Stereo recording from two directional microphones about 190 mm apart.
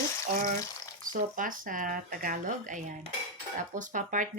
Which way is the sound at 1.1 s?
45° right (ahead or behind).